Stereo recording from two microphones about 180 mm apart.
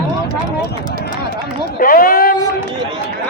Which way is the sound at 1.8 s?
50° left (ahead or behind).